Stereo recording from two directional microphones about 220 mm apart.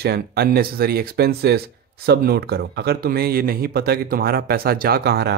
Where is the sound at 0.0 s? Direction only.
45° right (ahead or behind).